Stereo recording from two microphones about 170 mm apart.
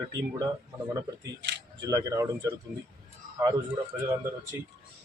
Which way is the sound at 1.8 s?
20° right (ahead or behind).